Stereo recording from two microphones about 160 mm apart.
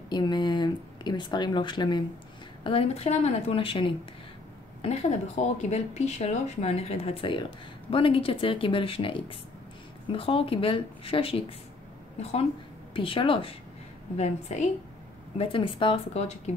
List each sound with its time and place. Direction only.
0.1 s speech: 25° left (ahead or behind)
4.8 s speech: 45° left (ahead or behind)
14.1 s speech: 45° left (ahead or behind)
15.3 s speech: 35° left (ahead or behind)